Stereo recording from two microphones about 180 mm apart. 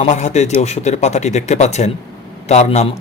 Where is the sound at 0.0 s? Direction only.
40° left (ahead or behind).